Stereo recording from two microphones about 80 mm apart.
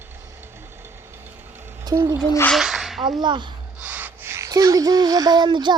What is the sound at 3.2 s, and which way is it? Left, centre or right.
Speech, right.